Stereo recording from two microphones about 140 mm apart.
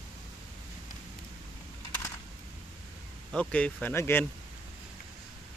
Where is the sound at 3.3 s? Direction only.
10° left (ahead or behind).